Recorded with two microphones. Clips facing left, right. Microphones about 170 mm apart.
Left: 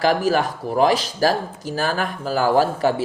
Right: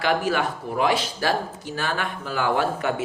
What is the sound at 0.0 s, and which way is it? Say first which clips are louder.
Speech: left 4 dB; 40° left (ahead or behind).